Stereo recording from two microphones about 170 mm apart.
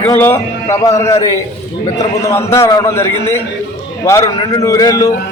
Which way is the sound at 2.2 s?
15° left (ahead or behind).